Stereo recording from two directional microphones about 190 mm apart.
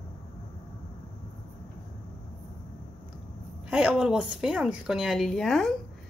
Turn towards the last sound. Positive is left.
turn(degrees=0)  # may be behind; listen again after turning